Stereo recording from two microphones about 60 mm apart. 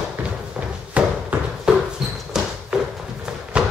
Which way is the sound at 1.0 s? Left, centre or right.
Right.